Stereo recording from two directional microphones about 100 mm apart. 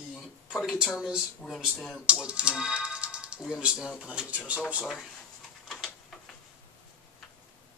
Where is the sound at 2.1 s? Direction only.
10° right (ahead or behind).